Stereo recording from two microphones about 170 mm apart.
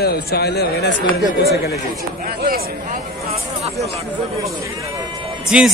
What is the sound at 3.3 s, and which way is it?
Hubbub, 40° right (ahead or behind).